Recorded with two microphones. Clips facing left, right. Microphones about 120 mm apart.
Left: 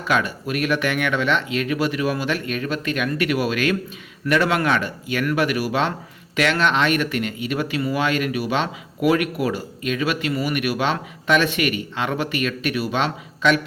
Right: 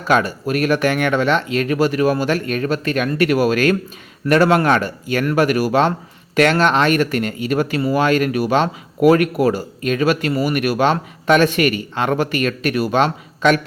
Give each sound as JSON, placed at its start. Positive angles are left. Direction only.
{"t": 0.1, "sound": "speech", "side_deg": -40}